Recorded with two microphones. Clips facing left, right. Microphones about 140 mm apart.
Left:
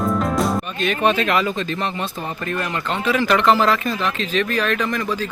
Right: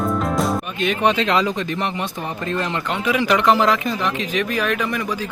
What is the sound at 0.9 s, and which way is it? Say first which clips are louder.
Speech: even; 15° right (ahead or behind).